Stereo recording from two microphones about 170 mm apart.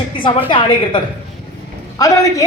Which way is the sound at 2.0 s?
20° left (ahead or behind).